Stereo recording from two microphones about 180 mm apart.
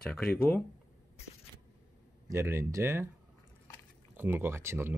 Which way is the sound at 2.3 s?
15° right (ahead or behind).